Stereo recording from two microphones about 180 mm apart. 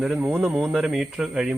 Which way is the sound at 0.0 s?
5° right (ahead or behind).